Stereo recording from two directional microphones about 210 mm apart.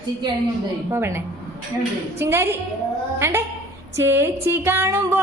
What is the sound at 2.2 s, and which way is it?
Music, 10° right (ahead or behind).